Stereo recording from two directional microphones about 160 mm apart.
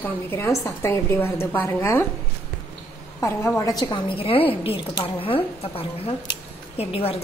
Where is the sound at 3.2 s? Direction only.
15° left (ahead or behind).